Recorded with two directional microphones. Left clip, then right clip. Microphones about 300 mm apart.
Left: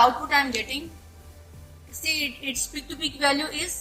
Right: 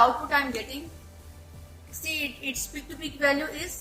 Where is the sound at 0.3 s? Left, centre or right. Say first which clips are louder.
Left 3 dB; left.